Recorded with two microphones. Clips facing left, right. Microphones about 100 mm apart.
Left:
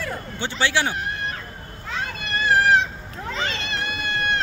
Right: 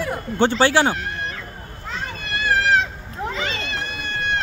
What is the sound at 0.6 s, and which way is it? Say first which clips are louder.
Speech: right 3 dB; 40° right (ahead or behind).